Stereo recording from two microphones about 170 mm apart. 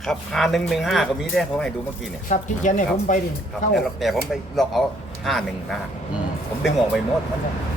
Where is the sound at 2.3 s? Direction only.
45° left (ahead or behind).